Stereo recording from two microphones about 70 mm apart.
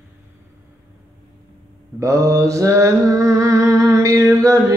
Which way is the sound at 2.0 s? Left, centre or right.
Right.